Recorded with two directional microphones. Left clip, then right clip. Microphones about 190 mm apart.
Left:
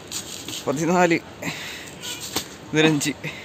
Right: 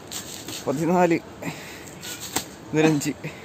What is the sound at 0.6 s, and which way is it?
Speech, 5° right (ahead or behind).